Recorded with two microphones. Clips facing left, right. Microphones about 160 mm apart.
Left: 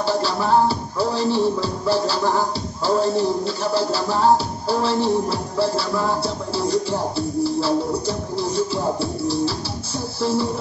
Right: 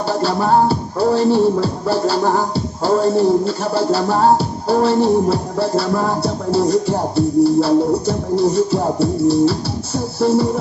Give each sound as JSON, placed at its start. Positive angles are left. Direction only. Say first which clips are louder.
{"t": 0.1, "sound": "music", "louder": "right 4 dB", "side_deg": -50}